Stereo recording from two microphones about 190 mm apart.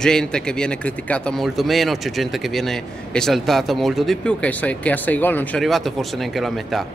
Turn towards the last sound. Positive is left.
turn(degrees=0)  # may be behind; listen again after turning